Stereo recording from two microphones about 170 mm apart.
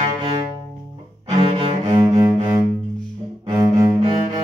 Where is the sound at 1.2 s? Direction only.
35° right (ahead or behind).